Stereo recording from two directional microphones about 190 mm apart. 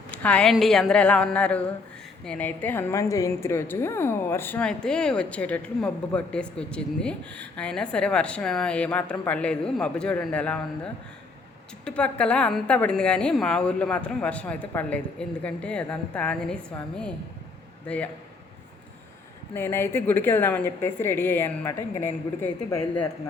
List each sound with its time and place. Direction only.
0.1 s a woman's voice: 5° left (ahead or behind)
11.9 s a woman's voice: 5° left (ahead or behind)
19.5 s a woman's voice: 10° left (ahead or behind)